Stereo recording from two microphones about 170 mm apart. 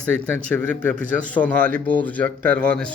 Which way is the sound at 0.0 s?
5° left (ahead or behind).